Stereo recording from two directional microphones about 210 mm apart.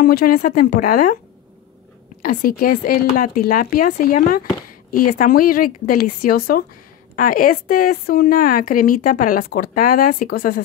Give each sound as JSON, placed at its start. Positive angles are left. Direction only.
{"t": 0.0, "sound": "speech", "side_deg": 45}
{"t": 2.2, "sound": "a woman's voice", "side_deg": 45}